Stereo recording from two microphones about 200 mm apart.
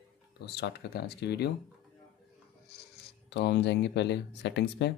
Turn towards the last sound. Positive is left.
turn(degrees=60)  # may be behind; listen again after turning